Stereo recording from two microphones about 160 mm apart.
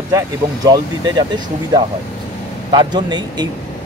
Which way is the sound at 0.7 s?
25° right (ahead or behind).